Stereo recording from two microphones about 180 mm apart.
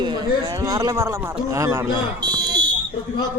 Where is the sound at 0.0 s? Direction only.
25° right (ahead or behind).